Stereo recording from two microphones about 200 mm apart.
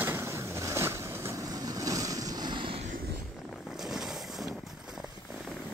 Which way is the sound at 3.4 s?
Centre (ahead or behind).